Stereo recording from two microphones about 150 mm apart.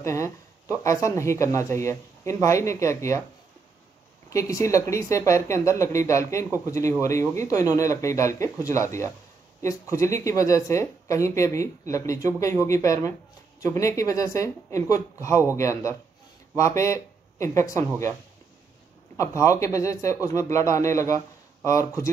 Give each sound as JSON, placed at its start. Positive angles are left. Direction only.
{"t": 0.0, "sound": "speech", "side_deg": 20}
{"t": 4.3, "sound": "speech", "side_deg": 20}
{"t": 19.1, "sound": "speech", "side_deg": 20}